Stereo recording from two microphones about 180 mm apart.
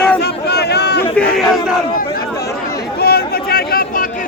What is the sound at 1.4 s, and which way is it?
Battle cry, centre (ahead or behind).